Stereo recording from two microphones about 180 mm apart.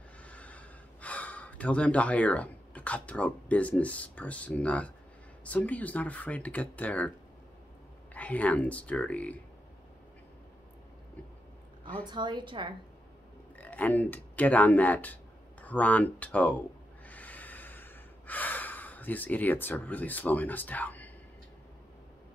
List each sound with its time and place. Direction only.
0.2 s gasp: 5° left (ahead or behind)
5.4 s speech: 10° left (ahead or behind)
8.1 s speech: 10° left (ahead or behind)
12.1 s a woman's voice: 25° right (ahead or behind)
13.6 s speech: 10° left (ahead or behind)
15.6 s a sound: 10° left (ahead or behind)